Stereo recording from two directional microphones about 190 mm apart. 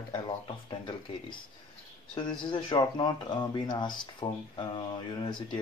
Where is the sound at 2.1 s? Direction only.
25° left (ahead or behind).